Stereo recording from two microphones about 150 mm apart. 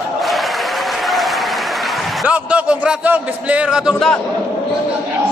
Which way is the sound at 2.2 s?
10° right (ahead or behind).